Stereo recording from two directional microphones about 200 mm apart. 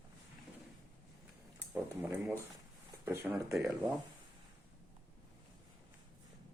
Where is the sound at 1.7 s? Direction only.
5° right (ahead or behind).